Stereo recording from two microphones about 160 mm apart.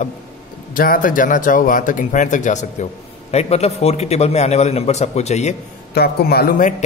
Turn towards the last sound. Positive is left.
turn(degrees=60)  # may be behind; listen again after turning